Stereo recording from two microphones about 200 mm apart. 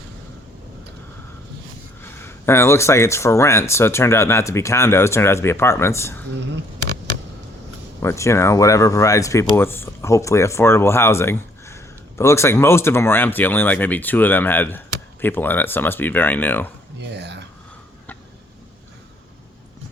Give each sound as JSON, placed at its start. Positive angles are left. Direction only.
{"t": 2.0, "sound": "speech", "side_deg": 10}
{"t": 8.0, "sound": "speech", "side_deg": 15}
{"t": 17.0, "sound": "a sound", "side_deg": -60}